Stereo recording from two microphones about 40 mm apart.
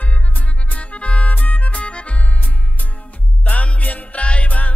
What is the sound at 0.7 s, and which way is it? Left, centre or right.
Music, left.